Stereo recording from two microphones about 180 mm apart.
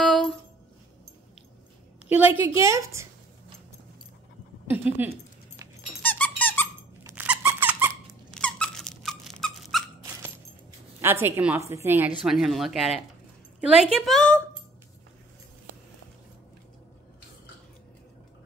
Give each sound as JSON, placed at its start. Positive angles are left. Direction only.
{"t": 0.0, "sound": "a sound", "side_deg": 5}
{"t": 2.0, "sound": "a woman's voice", "side_deg": -10}
{"t": 4.6, "sound": "speech", "side_deg": -10}
{"t": 6.0, "sound": "squeak", "side_deg": 10}
{"t": 7.2, "sound": "squeak", "side_deg": -10}
{"t": 8.3, "sound": "squeak", "side_deg": 5}
{"t": 11.0, "sound": "a woman's voice", "side_deg": -15}